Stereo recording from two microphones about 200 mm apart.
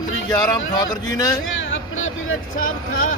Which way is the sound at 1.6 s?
75° left (ahead or behind).